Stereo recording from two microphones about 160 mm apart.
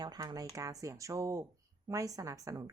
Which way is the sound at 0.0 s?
25° right (ahead or behind).